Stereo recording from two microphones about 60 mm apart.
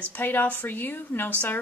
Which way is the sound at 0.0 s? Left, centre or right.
Left.